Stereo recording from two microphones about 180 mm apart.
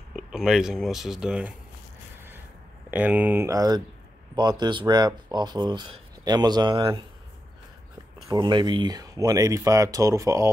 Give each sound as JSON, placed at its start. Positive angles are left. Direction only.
{"t": 0.1, "sound": "speech", "side_deg": 0}
{"t": 2.9, "sound": "speech", "side_deg": -10}
{"t": 8.3, "sound": "speech", "side_deg": -25}